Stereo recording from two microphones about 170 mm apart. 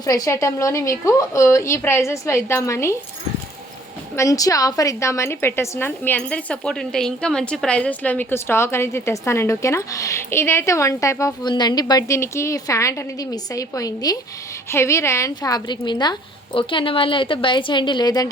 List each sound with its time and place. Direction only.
0.0 s a woman's voice: 20° left (ahead or behind)
4.1 s a woman's voice: 20° left (ahead or behind)